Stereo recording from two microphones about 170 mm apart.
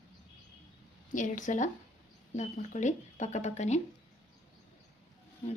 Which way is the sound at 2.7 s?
45° left (ahead or behind).